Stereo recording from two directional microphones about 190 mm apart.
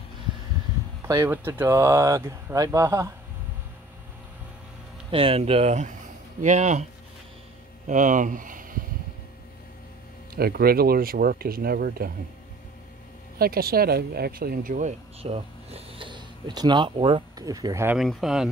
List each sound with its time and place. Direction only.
1.0 s speech: 15° right (ahead or behind)
5.1 s speech: 30° right (ahead or behind)
10.3 s speech: 55° right (ahead or behind)
13.4 s speech: 50° right (ahead or behind); by 17.9 s 15° right (ahead or behind)
17.9 s speech: centre (ahead or behind)